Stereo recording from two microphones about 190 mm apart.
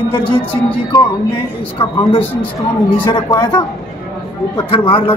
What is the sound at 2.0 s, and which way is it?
Speech, 30° left (ahead or behind).